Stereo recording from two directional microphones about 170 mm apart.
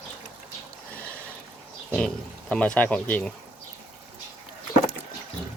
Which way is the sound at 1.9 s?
5° left (ahead or behind).